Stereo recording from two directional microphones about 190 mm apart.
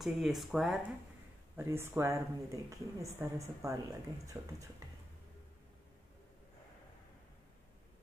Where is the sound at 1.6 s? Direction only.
10° right (ahead or behind).